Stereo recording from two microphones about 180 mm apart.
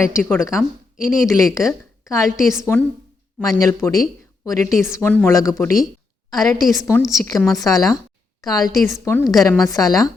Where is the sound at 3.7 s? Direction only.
15° left (ahead or behind).